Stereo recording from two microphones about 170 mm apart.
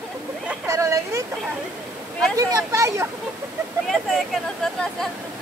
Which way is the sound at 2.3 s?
20° right (ahead or behind).